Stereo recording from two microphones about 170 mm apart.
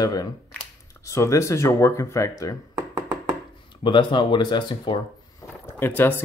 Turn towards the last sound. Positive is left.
turn(degrees=15)  # may be behind; listen again after turning